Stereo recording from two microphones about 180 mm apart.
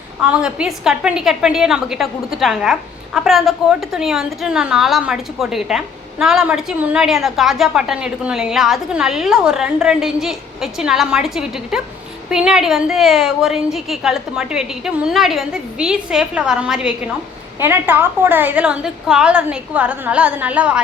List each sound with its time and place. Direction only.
0.2 s a woman's voice: 5° right (ahead or behind)